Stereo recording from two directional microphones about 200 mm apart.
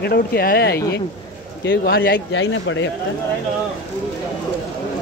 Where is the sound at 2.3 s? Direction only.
70° left (ahead or behind).